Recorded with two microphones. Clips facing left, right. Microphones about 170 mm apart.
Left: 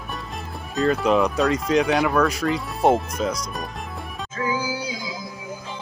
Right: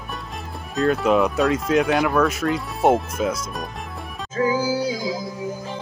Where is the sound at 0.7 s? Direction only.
Centre (ahead or behind).